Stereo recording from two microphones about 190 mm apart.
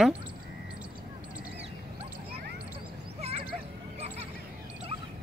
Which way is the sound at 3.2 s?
35° right (ahead or behind).